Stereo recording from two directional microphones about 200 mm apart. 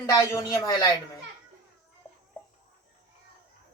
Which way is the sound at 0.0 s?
15° left (ahead or behind).